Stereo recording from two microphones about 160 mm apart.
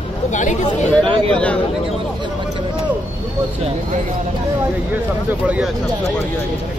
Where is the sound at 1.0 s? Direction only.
30° right (ahead or behind).